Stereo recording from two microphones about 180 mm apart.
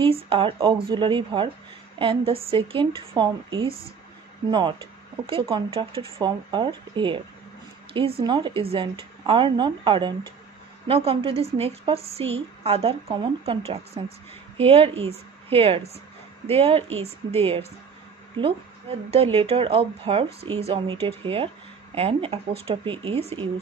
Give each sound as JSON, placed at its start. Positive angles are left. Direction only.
{"t": 0.0, "sound": "speech", "side_deg": -30}
{"t": 8.2, "sound": "a woman's voice", "side_deg": -25}
{"t": 19.1, "sound": "a woman's voice", "side_deg": -35}